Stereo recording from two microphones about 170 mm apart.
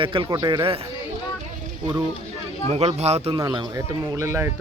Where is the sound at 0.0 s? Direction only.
30° right (ahead or behind).